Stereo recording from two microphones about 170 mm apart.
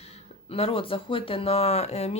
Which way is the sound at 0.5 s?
35° left (ahead or behind).